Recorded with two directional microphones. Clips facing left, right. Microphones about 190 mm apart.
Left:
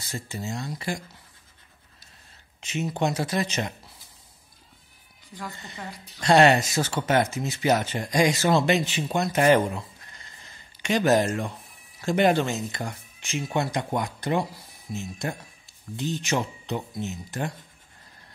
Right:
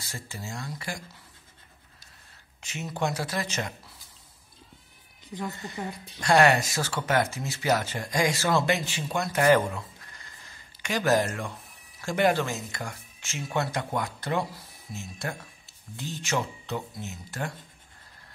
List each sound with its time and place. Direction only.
0.1 s speech: 20° left (ahead or behind)
2.6 s speech: 20° left (ahead or behind)
5.3 s speech: 25° right (ahead or behind)
6.2 s speech: 25° left (ahead or behind)